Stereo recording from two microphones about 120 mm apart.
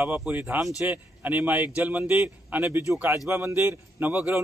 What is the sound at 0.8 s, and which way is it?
A man's voice, 15° right (ahead or behind).